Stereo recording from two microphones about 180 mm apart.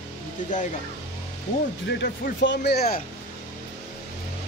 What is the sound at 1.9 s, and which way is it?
Speech, 65° left (ahead or behind).